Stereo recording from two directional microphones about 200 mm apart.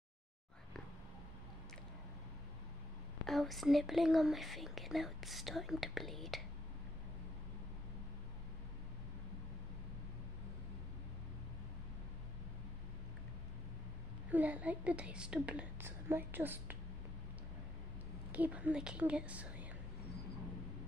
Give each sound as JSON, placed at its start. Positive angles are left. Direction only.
{"t": 3.3, "sound": "speech", "side_deg": 0}
{"t": 14.3, "sound": "a woman's voice", "side_deg": -5}
{"t": 18.3, "sound": "a woman's voice", "side_deg": -5}